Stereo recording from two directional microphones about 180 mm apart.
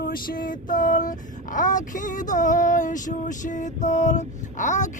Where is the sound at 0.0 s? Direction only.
50° left (ahead or behind).